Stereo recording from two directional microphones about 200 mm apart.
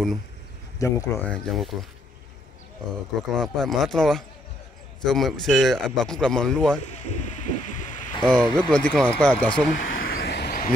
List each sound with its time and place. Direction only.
0.7 s speech: 15° left (ahead or behind)
1.3 s a man's voice: centre (ahead or behind)
3.3 s a man's voice: centre (ahead or behind)
6.9 s bird: 35° left (ahead or behind)
8.2 s a man's voice: 5° left (ahead or behind)
9.8 s a sound: 45° left (ahead or behind)